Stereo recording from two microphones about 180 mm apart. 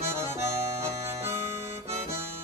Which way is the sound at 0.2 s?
15° right (ahead or behind).